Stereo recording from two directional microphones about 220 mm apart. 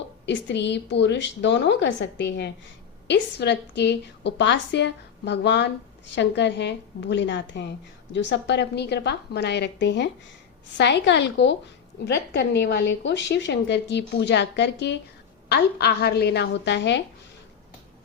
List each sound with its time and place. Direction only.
0.3 s speech: 50° left (ahead or behind)